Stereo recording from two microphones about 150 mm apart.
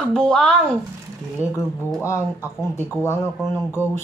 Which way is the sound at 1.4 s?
20° left (ahead or behind).